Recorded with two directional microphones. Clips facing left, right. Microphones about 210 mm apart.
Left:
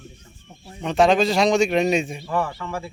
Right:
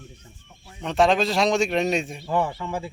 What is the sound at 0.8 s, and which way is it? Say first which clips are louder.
Speech: left 3 dB; centre (ahead or behind).